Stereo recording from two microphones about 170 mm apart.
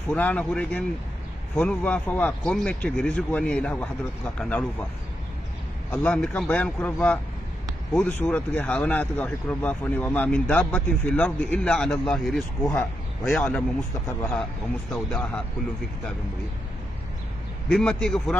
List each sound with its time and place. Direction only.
0.1 s speech: 5° left (ahead or behind)
5.9 s a man's voice: 5° left (ahead or behind)
14.9 s a man's voice: 5° left (ahead or behind)
17.6 s a man's voice: 5° left (ahead or behind)